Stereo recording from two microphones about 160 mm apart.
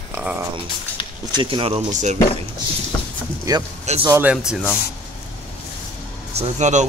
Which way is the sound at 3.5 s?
20° right (ahead or behind).